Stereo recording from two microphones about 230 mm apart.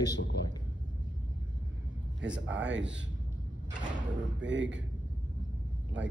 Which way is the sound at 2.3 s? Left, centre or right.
Right.